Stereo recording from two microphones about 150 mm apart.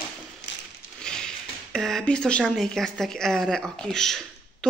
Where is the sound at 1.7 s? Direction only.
5° left (ahead or behind).